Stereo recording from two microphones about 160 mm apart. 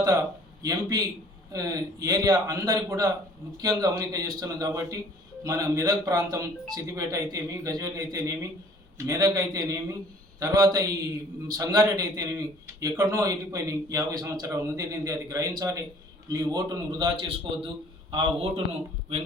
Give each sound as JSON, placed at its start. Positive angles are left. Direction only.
{"t": 0.6, "sound": "a man's voice", "side_deg": -20}